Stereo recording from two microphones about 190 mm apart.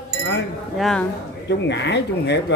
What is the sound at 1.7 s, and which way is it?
Speech, 65° left (ahead or behind).